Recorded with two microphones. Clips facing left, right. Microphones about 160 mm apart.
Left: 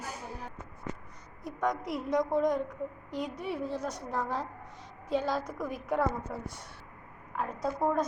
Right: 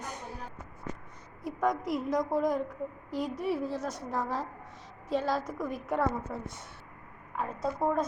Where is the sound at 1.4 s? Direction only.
5° right (ahead or behind).